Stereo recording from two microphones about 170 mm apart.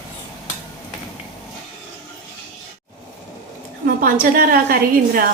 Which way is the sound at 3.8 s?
60° right (ahead or behind).